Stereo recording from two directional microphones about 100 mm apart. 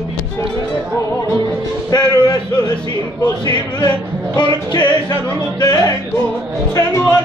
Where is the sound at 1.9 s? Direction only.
40° left (ahead or behind).